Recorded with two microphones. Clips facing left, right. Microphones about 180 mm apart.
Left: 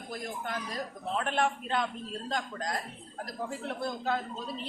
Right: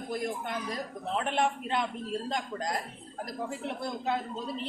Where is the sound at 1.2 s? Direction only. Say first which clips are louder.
Right 1 dB; 20° right (ahead or behind).